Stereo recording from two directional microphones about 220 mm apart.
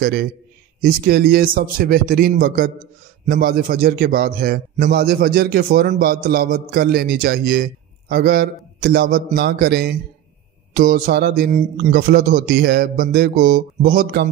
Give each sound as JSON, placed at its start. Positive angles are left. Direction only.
{"t": 0.0, "sound": "a man's voice", "side_deg": -45}